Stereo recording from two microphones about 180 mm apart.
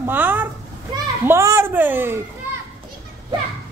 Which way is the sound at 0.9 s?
25° right (ahead or behind).